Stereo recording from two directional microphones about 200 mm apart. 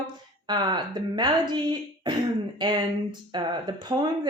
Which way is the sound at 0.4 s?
20° right (ahead or behind).